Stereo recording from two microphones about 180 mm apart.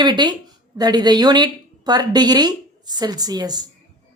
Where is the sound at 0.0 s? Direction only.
25° right (ahead or behind).